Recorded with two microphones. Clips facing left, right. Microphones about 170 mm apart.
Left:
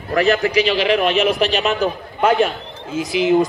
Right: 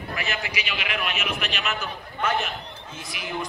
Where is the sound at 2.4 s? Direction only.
90° left.